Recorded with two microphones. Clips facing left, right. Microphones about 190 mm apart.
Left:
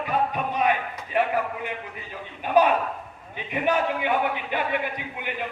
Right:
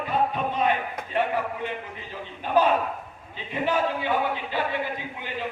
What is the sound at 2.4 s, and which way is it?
A man's voice, 15° left (ahead or behind).